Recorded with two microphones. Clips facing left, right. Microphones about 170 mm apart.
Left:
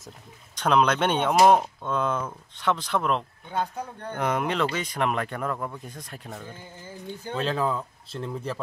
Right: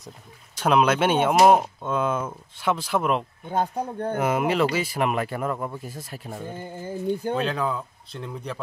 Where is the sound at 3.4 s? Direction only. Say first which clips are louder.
Right 4 dB; 45° right (ahead or behind).